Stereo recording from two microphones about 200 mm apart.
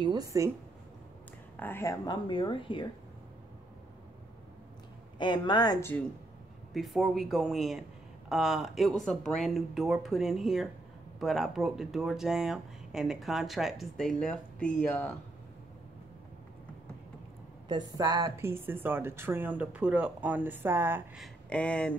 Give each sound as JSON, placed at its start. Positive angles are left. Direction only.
{"t": 0.0, "sound": "a woman's voice", "side_deg": -20}
{"t": 1.6, "sound": "a woman's voice", "side_deg": 10}
{"t": 5.2, "sound": "a woman's voice", "side_deg": 25}
{"t": 6.7, "sound": "speech", "side_deg": 0}
{"t": 17.6, "sound": "a woman's voice", "side_deg": -20}
{"t": 21.2, "sound": "speech", "side_deg": 5}